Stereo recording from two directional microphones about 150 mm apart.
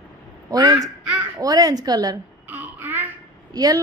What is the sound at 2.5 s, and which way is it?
Babbling, 15° right (ahead or behind).